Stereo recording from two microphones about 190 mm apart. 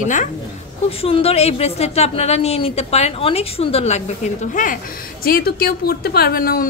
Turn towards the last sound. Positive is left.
turn(degrees=50)  # may be behind; listen again after turning